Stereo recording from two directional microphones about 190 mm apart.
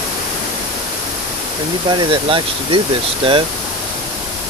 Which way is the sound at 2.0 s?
25° right (ahead or behind).